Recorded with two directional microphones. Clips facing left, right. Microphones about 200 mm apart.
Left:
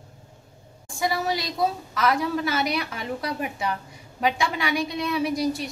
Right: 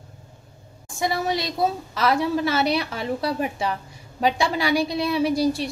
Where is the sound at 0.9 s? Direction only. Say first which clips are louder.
Right 2 dB; 25° right (ahead or behind).